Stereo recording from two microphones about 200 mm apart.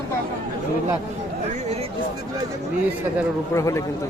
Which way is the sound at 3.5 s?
15° left (ahead or behind).